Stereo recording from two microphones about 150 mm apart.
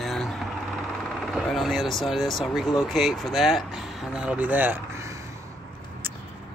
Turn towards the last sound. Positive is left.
turn(degrees=-20)  # may be behind; listen again after turning